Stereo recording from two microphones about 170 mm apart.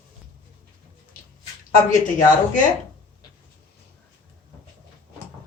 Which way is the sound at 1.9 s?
50° left (ahead or behind).